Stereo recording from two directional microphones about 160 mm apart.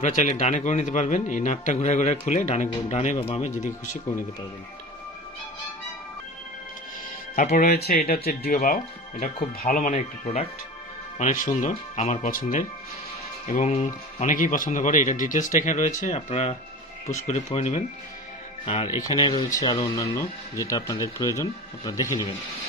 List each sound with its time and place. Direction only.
0.0 s speech: 50° left (ahead or behind)
7.3 s speech: 55° left (ahead or behind)
13.5 s speech: 45° left (ahead or behind)
19.0 s speech: 25° left (ahead or behind)